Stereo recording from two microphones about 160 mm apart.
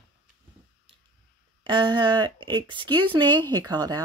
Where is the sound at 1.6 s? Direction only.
30° right (ahead or behind).